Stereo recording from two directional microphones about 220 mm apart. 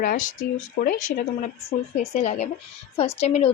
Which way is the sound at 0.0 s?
40° left (ahead or behind).